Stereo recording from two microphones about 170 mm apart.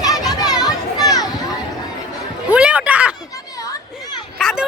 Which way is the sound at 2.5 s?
5° right (ahead or behind).